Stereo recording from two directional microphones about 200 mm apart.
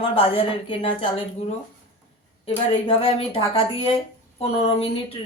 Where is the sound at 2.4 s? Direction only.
30° left (ahead or behind).